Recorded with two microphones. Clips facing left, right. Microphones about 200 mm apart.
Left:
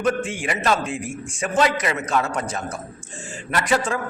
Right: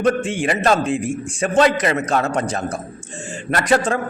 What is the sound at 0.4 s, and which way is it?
A man's voice, 35° right (ahead or behind).